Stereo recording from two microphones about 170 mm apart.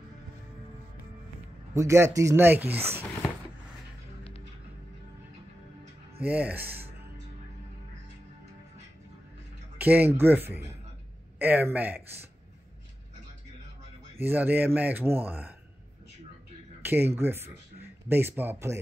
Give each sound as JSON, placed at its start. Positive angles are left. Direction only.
{"t": 1.7, "sound": "speech", "side_deg": -15}
{"t": 6.2, "sound": "speech", "side_deg": -10}
{"t": 9.8, "sound": "speech", "side_deg": -10}
{"t": 14.2, "sound": "speech", "side_deg": -10}
{"t": 16.8, "sound": "speech", "side_deg": -10}